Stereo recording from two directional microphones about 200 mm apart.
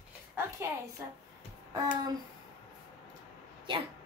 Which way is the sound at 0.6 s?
15° right (ahead or behind).